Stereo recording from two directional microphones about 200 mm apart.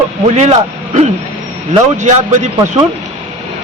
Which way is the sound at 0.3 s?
35° right (ahead or behind).